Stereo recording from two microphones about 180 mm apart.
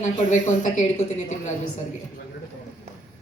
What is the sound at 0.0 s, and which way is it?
A woman's voice, 45° left (ahead or behind).